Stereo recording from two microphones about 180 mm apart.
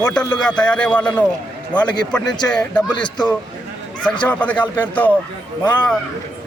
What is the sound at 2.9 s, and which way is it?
Speech, 25° left (ahead or behind).